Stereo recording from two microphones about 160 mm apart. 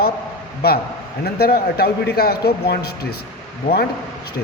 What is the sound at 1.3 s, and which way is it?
A man's voice, 75° left (ahead or behind).